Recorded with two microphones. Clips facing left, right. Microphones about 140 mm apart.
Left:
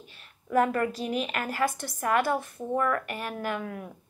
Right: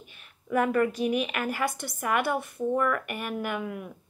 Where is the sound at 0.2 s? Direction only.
5° right (ahead or behind).